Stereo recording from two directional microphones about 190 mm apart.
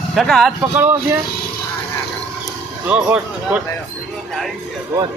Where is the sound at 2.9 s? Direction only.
5° right (ahead or behind).